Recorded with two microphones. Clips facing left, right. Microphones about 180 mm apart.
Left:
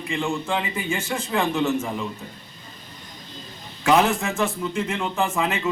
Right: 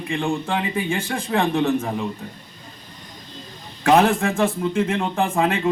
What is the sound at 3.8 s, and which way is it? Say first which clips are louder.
Speech: right 3 dB; 55° right (ahead or behind).